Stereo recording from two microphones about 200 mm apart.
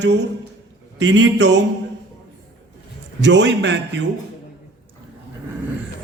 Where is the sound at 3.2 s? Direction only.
65° right (ahead or behind).